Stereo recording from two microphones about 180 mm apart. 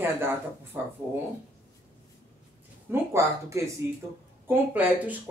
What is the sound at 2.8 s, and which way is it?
Speech, 15° right (ahead or behind).